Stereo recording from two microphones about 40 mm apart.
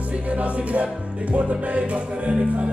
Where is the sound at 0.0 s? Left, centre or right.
Right.